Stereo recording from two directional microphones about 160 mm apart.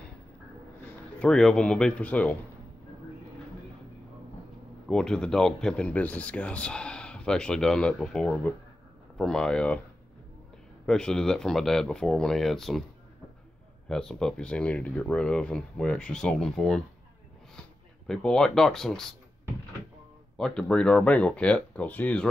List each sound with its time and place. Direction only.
1.2 s speech: 5° left (ahead or behind)
4.8 s speech: 5° left (ahead or behind)
10.9 s speech: 5° left (ahead or behind)
13.8 s speech: 5° left (ahead or behind)
18.0 s speech: 5° left (ahead or behind)
20.3 s speech: 5° left (ahead or behind)